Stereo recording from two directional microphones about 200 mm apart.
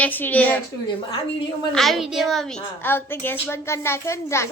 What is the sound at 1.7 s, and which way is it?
A woman's voice, centre (ahead or behind).